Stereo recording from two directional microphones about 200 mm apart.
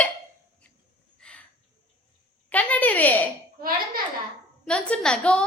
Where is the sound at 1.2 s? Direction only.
5° left (ahead or behind).